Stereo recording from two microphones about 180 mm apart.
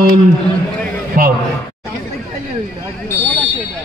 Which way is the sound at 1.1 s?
50° right (ahead or behind).